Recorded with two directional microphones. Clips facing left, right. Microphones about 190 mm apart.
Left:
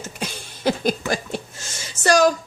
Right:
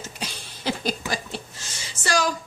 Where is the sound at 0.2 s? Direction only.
50° left (ahead or behind).